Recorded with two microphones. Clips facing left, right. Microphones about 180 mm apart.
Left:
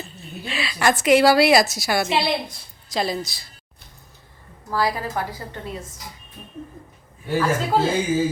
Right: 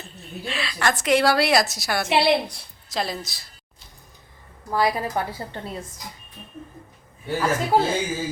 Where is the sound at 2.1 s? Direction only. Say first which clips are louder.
Right 3 dB; 70° right (ahead or behind).